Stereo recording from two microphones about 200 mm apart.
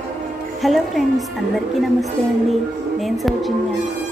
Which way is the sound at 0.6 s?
Centre (ahead or behind).